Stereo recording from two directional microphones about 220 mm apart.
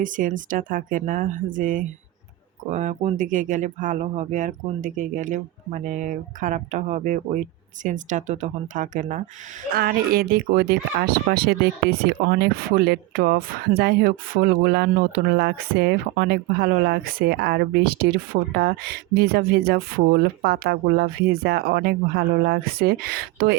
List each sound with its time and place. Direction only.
0.0 s speech: 35° right (ahead or behind)